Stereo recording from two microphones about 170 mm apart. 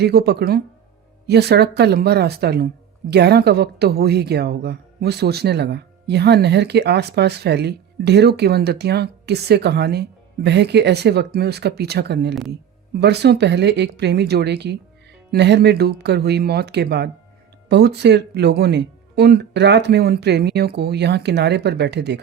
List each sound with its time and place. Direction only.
0.0 s a woman's voice: 70° right (ahead or behind)